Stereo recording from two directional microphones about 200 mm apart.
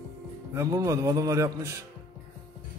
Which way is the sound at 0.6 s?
15° right (ahead or behind).